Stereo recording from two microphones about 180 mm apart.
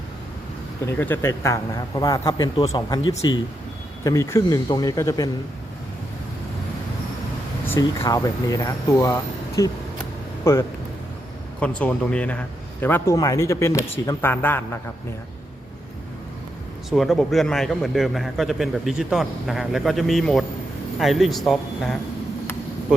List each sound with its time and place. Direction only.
0.9 s speech: 10° left (ahead or behind)
7.7 s speech: 15° left (ahead or behind)
16.9 s a man's voice: centre (ahead or behind)